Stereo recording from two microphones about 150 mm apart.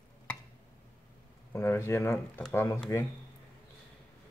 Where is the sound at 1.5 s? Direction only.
15° left (ahead or behind).